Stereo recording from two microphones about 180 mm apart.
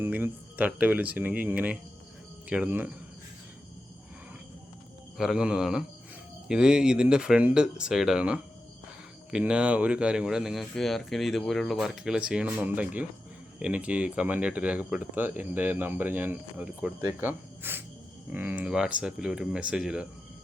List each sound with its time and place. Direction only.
0.0 s speech: 10° right (ahead or behind)
5.1 s speech: 5° right (ahead or behind)